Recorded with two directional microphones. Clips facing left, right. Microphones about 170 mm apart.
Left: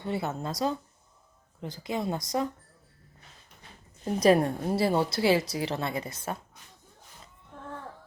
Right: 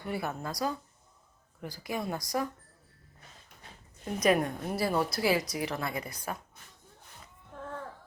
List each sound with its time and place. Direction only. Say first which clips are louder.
0.0 s a woman's voice: left 3 dB; 25° left (ahead or behind)
4.0 s a woman's voice: left 5 dB; 30° left (ahead or behind)